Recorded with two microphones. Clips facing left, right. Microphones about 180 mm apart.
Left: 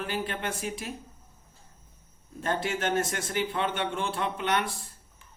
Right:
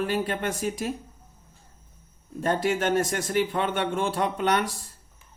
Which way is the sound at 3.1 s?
45° right (ahead or behind).